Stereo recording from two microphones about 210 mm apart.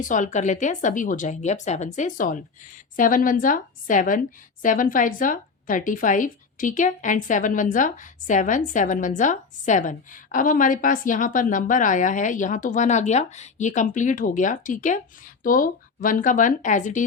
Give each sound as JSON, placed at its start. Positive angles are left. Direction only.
{"t": 0.0, "sound": "speech", "side_deg": 35}